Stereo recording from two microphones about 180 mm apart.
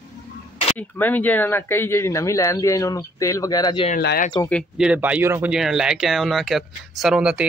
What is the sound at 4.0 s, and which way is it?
Speech, 65° left (ahead or behind).